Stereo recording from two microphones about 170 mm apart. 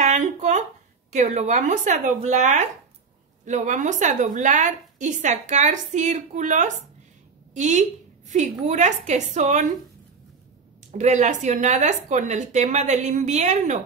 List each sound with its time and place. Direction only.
0.0 s a sound: 45° right (ahead or behind)
1.1 s speech: 40° right (ahead or behind)
10.9 s speech: 45° right (ahead or behind)